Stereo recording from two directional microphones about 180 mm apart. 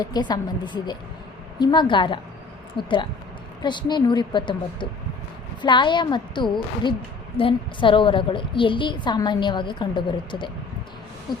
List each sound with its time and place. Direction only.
0.0 s a woman's voice: 25° left (ahead or behind)